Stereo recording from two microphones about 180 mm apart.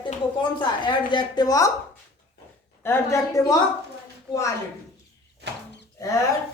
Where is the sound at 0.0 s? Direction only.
25° left (ahead or behind).